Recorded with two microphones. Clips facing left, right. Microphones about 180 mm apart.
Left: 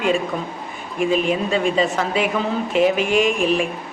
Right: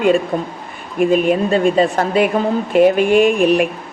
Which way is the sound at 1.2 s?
50° right (ahead or behind).